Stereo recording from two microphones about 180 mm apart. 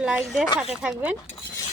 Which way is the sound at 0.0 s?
5° right (ahead or behind).